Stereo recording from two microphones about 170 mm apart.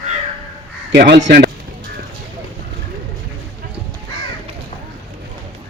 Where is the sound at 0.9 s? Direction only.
80° right.